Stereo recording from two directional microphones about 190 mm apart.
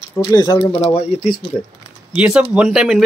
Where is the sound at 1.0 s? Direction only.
35° left (ahead or behind).